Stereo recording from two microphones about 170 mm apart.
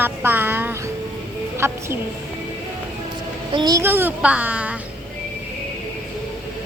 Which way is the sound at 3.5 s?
25° right (ahead or behind).